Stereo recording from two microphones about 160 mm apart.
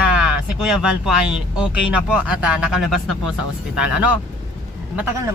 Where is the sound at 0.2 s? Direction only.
5° right (ahead or behind).